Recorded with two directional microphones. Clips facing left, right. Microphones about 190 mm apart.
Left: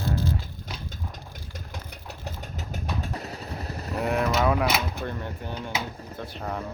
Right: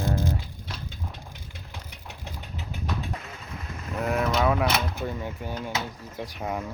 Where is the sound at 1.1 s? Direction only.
40° left (ahead or behind).